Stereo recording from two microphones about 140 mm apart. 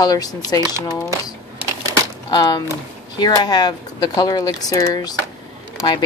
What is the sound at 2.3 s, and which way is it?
Speech, 30° left (ahead or behind).